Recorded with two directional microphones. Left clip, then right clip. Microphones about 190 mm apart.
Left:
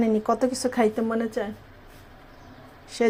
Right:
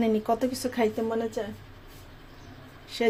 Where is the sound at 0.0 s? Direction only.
15° left (ahead or behind).